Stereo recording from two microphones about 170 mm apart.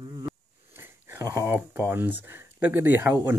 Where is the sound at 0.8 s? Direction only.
15° right (ahead or behind).